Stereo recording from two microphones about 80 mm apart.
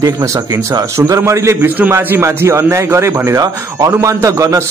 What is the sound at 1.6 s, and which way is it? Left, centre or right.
A man's voice, right.